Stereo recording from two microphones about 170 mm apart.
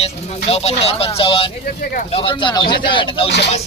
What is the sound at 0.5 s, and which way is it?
Speech, 40° left (ahead or behind).